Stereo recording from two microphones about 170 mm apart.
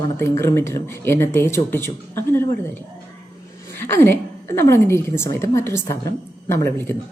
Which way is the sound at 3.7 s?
15° left (ahead or behind).